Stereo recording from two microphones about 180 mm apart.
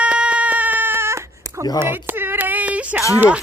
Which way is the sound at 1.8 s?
10° right (ahead or behind).